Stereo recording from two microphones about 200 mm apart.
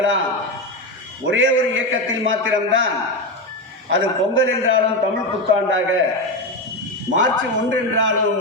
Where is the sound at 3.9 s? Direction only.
75° right (ahead or behind).